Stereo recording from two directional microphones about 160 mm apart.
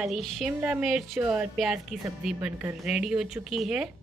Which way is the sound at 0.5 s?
10° right (ahead or behind).